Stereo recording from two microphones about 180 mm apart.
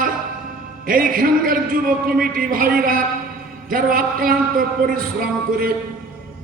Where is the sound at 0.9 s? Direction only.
50° right (ahead or behind).